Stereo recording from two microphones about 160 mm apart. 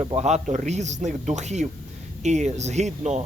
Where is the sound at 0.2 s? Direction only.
45° right (ahead or behind).